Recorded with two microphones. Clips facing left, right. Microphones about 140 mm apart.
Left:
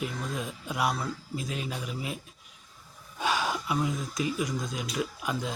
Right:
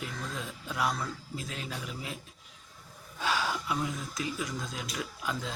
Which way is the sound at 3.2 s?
15° left (ahead or behind).